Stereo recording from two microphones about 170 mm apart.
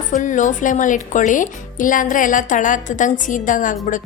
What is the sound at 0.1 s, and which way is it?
A woman's voice, 50° left (ahead or behind).